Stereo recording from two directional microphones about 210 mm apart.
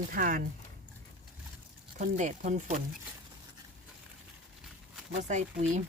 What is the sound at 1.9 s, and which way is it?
Speech, 40° right (ahead or behind).